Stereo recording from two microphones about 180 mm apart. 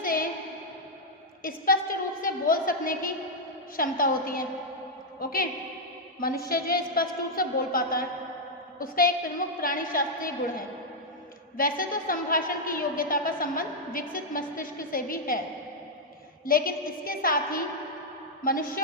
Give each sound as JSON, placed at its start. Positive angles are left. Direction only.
{"t": 0.0, "sound": "a sound", "side_deg": 50}
{"t": 1.4, "sound": "a woman's voice", "side_deg": 50}
{"t": 11.5, "sound": "a woman's voice", "side_deg": 50}
{"t": 16.5, "sound": "a woman's voice", "side_deg": 55}